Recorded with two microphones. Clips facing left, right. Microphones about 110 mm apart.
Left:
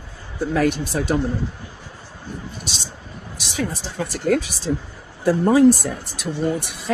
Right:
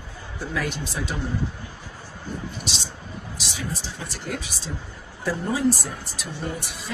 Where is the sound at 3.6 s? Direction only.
55° left (ahead or behind).